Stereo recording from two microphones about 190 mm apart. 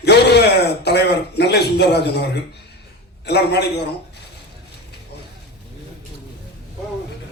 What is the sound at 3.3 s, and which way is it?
Speech, 60° left (ahead or behind).